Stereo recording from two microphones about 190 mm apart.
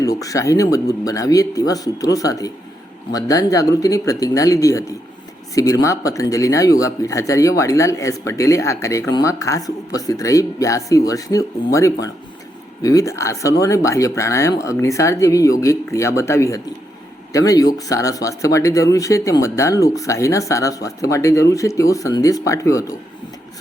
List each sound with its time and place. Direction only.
0.0 s speech: 20° left (ahead or behind)